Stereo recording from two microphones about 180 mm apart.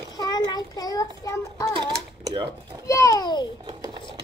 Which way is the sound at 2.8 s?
20° left (ahead or behind).